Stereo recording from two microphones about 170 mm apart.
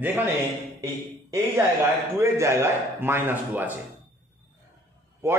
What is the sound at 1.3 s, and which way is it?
A man's voice, 15° right (ahead or behind).